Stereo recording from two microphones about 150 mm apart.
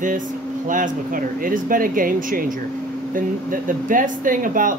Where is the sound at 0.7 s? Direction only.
65° right (ahead or behind).